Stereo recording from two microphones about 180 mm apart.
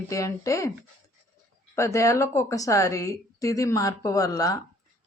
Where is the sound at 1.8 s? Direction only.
15° left (ahead or behind).